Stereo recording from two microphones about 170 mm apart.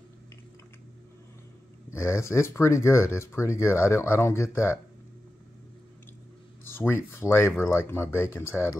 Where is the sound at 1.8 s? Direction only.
15° left (ahead or behind).